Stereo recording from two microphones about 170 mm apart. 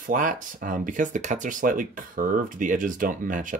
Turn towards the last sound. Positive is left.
turn(degrees=-50)  # may be behind; listen again after turning